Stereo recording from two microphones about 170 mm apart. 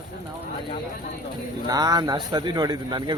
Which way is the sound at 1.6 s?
20° right (ahead or behind).